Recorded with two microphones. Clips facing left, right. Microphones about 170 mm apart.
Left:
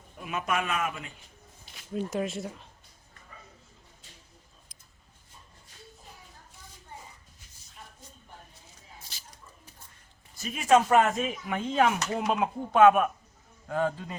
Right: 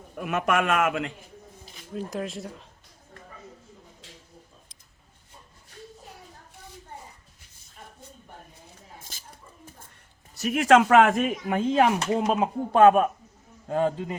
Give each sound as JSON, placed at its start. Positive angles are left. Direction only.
{"t": 0.2, "sound": "speech", "side_deg": -70}
{"t": 1.9, "sound": "speech", "side_deg": 0}
{"t": 9.0, "sound": "dog", "side_deg": -50}
{"t": 10.3, "sound": "speech", "side_deg": -75}
{"t": 11.4, "sound": "speech", "side_deg": -35}
{"t": 13.7, "sound": "a man's voice", "side_deg": -25}